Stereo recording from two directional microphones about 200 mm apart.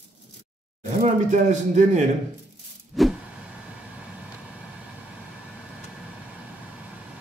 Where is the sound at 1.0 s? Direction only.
35° right (ahead or behind).